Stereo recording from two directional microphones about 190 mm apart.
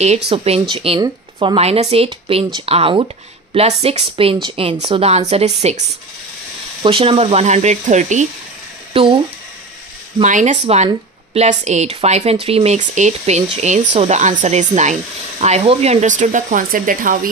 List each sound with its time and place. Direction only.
0.3 s a woman's voice: 30° right (ahead or behind)
8.9 s speech: 30° right (ahead or behind)
10.2 s speech: 40° right (ahead or behind)